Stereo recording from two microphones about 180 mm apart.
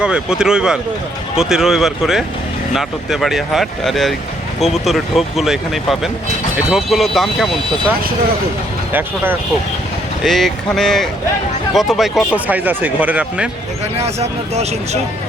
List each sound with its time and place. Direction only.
0.0 s speech: 5° right (ahead or behind)
8.9 s speech: 10° right (ahead or behind)
10.2 s speech: centre (ahead or behind)
14.0 s speech: 35° right (ahead or behind)